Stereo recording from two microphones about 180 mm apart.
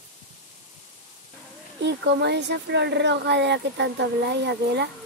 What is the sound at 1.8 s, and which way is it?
Speech, 70° right (ahead or behind).